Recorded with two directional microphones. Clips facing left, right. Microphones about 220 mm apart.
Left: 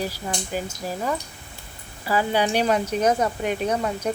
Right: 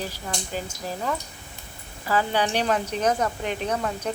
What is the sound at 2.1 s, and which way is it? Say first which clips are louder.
Speech: left 2 dB; 10° left (ahead or behind).